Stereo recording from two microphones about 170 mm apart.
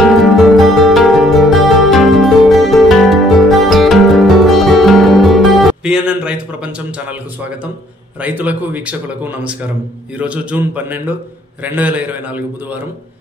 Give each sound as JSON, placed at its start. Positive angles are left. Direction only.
{"t": 0.0, "sound": "music", "side_deg": 0}
{"t": 8.2, "sound": "speech", "side_deg": -10}